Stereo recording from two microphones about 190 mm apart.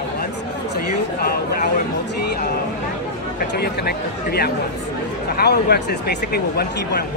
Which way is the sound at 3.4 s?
55° left (ahead or behind).